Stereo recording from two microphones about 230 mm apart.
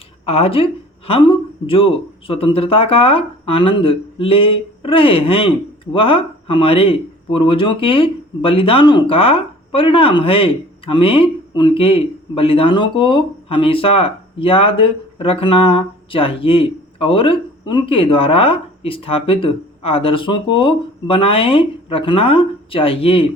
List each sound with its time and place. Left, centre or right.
0.3 s speech: left